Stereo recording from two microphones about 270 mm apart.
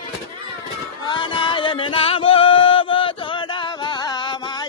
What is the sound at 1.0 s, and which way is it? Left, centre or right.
Music, centre.